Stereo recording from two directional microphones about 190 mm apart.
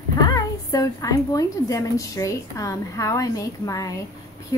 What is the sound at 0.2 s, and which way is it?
A woman's voice, 20° left (ahead or behind).